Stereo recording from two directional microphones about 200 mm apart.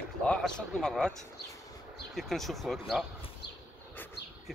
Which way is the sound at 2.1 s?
Centre (ahead or behind).